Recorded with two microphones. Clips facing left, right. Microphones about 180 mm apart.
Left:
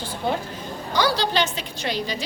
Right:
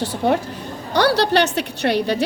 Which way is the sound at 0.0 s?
75° right (ahead or behind).